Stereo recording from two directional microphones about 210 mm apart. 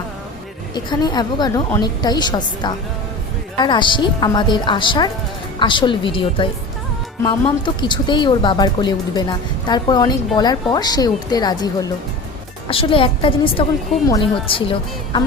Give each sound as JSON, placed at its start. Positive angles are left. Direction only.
{"t": 0.7, "sound": "a woman's voice", "side_deg": 20}